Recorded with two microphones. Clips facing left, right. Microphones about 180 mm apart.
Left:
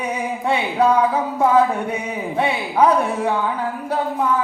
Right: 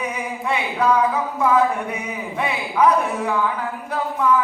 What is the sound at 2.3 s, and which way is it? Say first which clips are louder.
Music: left 3 dB; 30° left (ahead or behind).